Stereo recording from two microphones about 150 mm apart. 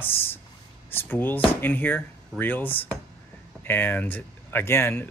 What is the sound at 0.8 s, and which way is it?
Speech, 15° left (ahead or behind).